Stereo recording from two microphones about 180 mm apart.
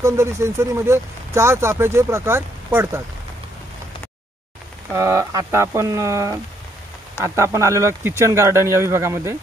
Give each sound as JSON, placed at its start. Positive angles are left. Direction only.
{"t": 0.0, "sound": "speech", "side_deg": -15}
{"t": 4.9, "sound": "speech", "side_deg": -15}